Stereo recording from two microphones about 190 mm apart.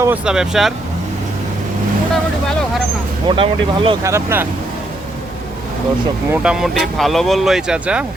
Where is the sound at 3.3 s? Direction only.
25° right (ahead or behind).